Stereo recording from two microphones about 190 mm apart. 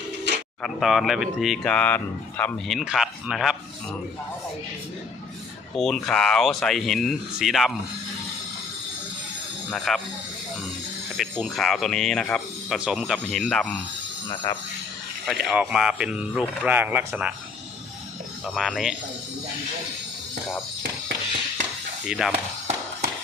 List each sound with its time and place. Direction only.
0.3 s a sound: 65° right (ahead or behind)
0.6 s speech: centre (ahead or behind)
5.7 s speech: centre (ahead or behind)
9.6 s speech: 5° left (ahead or behind)
11.2 s speech: centre (ahead or behind)
14.5 s speech: 15° left (ahead or behind)
15.3 s speech: 5° right (ahead or behind)
18.4 s speech: centre (ahead or behind)
22.0 s speech: 5° right (ahead or behind)